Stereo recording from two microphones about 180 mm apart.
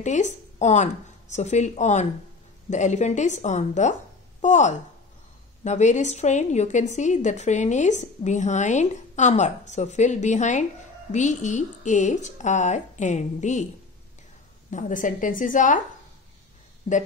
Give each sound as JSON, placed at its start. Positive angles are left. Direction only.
{"t": 0.0, "sound": "a woman's voice", "side_deg": 40}
{"t": 14.7, "sound": "a woman's voice", "side_deg": 45}